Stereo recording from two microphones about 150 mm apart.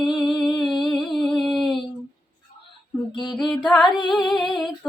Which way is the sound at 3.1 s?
30° left (ahead or behind).